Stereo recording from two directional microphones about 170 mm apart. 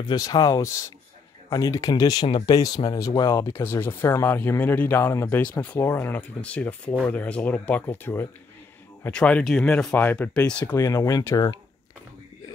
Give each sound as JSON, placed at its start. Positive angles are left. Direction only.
{"t": 0.1, "sound": "speech", "side_deg": 20}